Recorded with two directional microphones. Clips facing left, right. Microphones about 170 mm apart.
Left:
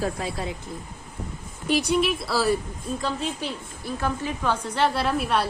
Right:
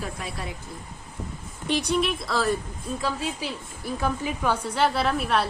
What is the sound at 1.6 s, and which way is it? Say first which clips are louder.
A woman's voice: left 2 dB; centre (ahead or behind).